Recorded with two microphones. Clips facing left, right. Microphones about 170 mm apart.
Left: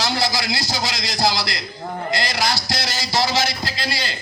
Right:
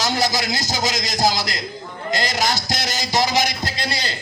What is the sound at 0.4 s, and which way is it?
Speech, 45° right (ahead or behind).